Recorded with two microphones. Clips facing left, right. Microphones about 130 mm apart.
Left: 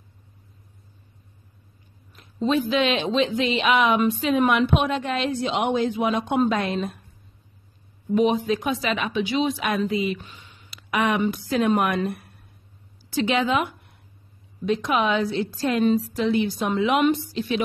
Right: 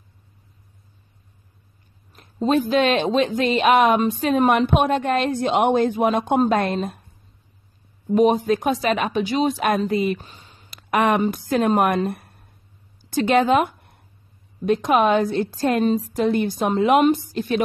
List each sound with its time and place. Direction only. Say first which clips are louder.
2.4 s speech: right 3 dB; 45° right (ahead or behind)
8.1 s speech: right 4 dB; 45° right (ahead or behind)